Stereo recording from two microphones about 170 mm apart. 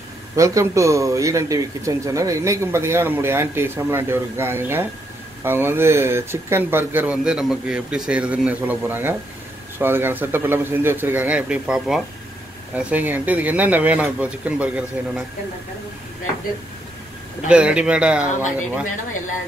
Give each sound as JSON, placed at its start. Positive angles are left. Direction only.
{"t": 0.4, "sound": "a man's voice", "side_deg": -20}
{"t": 17.5, "sound": "a man's voice", "side_deg": -5}